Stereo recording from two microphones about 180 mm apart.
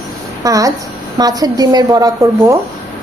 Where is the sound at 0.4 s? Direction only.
20° right (ahead or behind).